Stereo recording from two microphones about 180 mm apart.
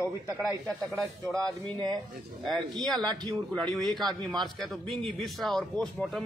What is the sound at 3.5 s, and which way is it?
A man's voice, 5° left (ahead or behind).